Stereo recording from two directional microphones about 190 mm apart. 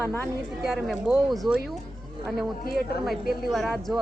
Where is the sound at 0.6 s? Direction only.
Centre (ahead or behind).